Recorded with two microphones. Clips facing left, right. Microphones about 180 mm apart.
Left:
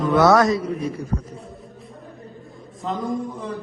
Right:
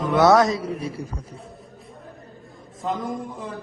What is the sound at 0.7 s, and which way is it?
Speech, 30° right (ahead or behind).